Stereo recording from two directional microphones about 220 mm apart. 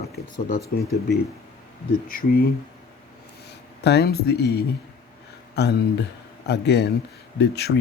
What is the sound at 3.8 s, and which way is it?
Speech, 45° left (ahead or behind).